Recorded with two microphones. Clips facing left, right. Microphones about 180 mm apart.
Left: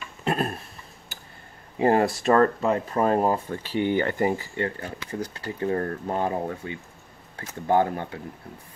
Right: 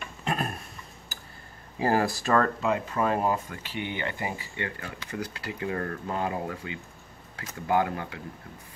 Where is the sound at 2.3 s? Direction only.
35° left (ahead or behind).